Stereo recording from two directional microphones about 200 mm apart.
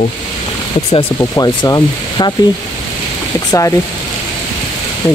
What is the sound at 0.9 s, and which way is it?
Speech, 20° left (ahead or behind).